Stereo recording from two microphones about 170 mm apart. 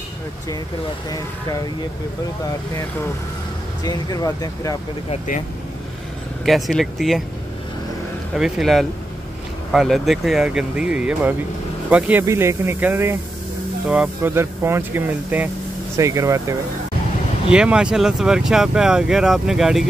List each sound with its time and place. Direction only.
3.8 s speech: 20° left (ahead or behind)
5.1 s speech: 50° left (ahead or behind)
6.4 s speech: centre (ahead or behind)
8.4 s speech: 5° right (ahead or behind); by 16.5 s 20° right (ahead or behind)
17.5 s speech: 5° right (ahead or behind)